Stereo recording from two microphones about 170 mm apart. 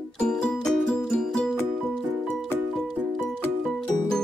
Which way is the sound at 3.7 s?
5° left (ahead or behind).